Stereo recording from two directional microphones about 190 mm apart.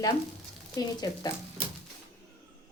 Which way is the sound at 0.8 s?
20° left (ahead or behind).